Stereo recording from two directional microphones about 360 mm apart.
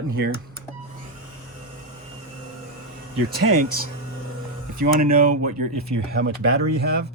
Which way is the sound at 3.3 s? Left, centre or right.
Right.